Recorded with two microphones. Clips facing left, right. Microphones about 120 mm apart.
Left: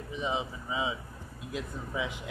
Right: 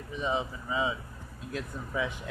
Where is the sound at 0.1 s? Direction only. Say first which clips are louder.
Right 2 dB; 15° left (ahead or behind).